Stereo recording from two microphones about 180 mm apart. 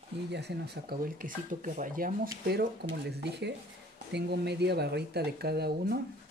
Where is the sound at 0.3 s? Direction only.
70° right (ahead or behind); by 2.1 s 50° right (ahead or behind).